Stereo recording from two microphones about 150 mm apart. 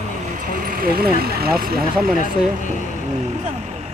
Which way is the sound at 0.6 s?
80° right.